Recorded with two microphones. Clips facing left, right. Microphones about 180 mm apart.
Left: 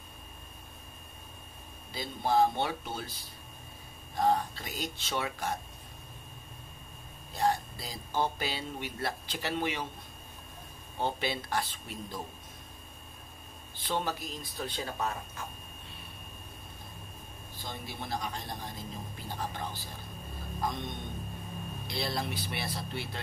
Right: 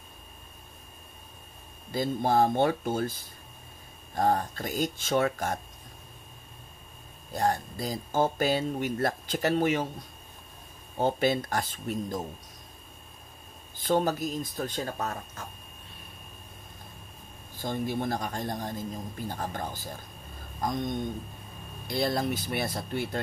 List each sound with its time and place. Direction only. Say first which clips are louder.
1.9 s speech: right 5 dB; 50° right (ahead or behind)
7.3 s speech: right 2 dB; 45° right (ahead or behind)
11.0 s speech: right 7 dB; 45° right (ahead or behind)
13.7 s speech: right 8 dB; 45° right (ahead or behind)
17.6 s speech: right 11 dB; 50° right (ahead or behind)